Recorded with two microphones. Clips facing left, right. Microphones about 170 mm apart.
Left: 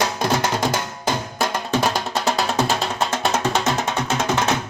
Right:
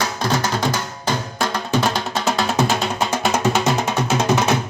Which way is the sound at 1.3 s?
10° left (ahead or behind).